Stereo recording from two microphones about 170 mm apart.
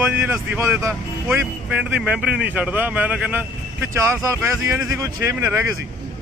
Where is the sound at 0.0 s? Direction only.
15° right (ahead or behind).